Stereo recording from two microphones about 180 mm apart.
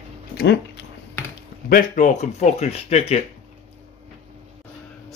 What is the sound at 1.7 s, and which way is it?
Speech, 45° left (ahead or behind).